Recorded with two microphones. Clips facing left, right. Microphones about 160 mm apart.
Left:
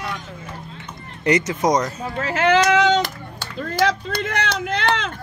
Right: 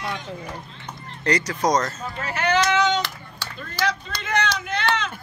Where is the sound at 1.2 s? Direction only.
20° left (ahead or behind).